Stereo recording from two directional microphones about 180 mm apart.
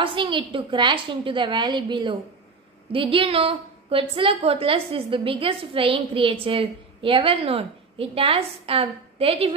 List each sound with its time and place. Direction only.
0.0 s a woman's voice: 30° right (ahead or behind)